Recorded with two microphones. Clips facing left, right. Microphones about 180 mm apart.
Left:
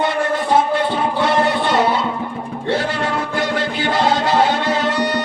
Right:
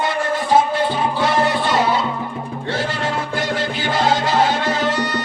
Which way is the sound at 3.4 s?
60° left (ahead or behind).